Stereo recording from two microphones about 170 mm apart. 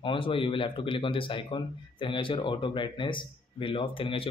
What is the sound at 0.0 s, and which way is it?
Speech, 30° left (ahead or behind).